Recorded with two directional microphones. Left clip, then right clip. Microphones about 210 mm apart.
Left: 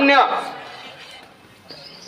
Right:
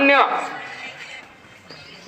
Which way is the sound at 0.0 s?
20° left (ahead or behind).